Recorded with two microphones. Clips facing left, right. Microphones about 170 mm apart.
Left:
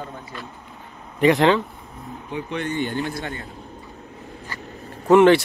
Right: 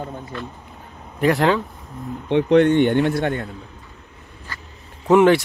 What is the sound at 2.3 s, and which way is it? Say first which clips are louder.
Speech: right 13 dB; 80° right.